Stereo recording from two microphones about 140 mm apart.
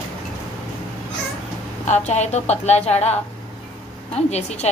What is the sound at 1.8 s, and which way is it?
A woman's voice, 55° left (ahead or behind).